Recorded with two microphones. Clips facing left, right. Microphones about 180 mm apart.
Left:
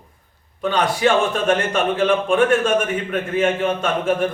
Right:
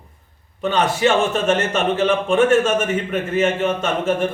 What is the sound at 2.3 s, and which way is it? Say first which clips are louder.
A man's voice: right 3 dB; 5° right (ahead or behind).